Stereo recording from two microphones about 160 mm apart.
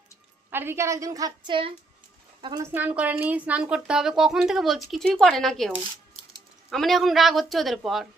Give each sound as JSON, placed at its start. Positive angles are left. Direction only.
{"t": 0.5, "sound": "a woman's voice", "side_deg": -15}
{"t": 2.7, "sound": "a woman's voice", "side_deg": -10}